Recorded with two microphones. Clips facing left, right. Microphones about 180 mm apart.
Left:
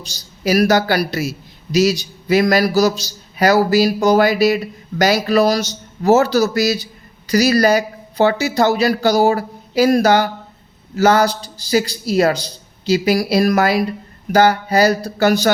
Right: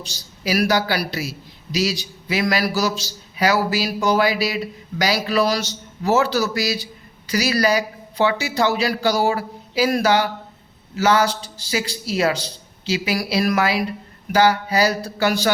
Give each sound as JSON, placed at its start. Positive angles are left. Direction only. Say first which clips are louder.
{"t": 0.4, "sound": "a man's voice", "louder": "left 5 dB", "side_deg": 45}